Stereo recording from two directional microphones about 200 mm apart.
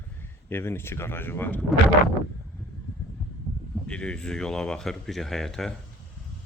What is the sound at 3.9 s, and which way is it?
Speech, 5° left (ahead or behind).